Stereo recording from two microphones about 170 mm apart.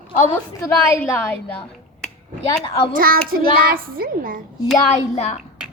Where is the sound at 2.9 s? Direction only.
60° right (ahead or behind).